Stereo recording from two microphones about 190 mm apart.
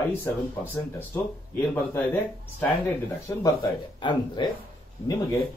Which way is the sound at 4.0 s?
25° left (ahead or behind).